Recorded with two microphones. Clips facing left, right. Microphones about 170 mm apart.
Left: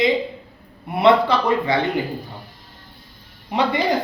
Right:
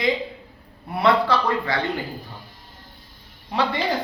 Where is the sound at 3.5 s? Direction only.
20° left (ahead or behind).